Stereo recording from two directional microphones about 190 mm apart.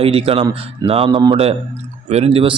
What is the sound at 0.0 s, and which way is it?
Speech, 30° right (ahead or behind).